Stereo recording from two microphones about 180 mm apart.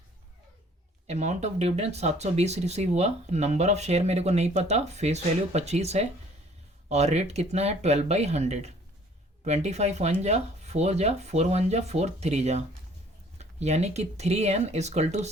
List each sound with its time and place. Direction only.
1.0 s speech: 40° right (ahead or behind)